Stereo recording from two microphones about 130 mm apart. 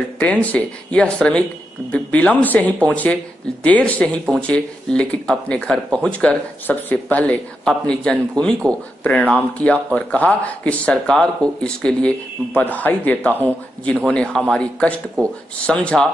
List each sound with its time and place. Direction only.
0.2 s speech: 10° left (ahead or behind)
13.3 s a man's voice: 15° right (ahead or behind)
13.8 s speech: 5° left (ahead or behind)